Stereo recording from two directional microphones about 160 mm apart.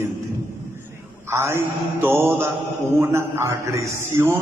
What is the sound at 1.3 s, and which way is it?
A man's voice, 15° right (ahead or behind).